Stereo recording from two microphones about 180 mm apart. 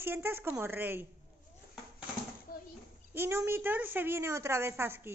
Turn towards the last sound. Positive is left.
turn(degrees=-15)  # may be behind; listen again after turning